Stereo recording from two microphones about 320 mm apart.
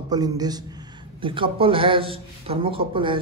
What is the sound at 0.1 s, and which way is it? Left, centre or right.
A man's voice, centre.